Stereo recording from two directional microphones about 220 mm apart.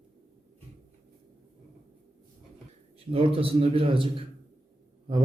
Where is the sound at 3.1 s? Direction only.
25° right (ahead or behind).